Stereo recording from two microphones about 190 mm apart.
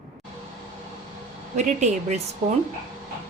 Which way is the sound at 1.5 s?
35° right (ahead or behind).